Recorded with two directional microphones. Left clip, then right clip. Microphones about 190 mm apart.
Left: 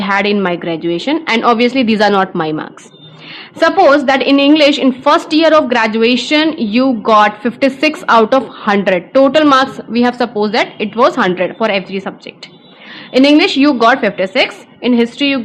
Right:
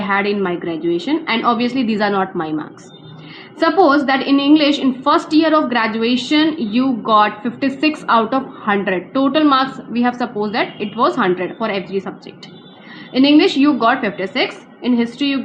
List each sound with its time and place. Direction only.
0.0 s a woman's voice: 40° left (ahead or behind)
13.1 s a woman's voice: 40° left (ahead or behind)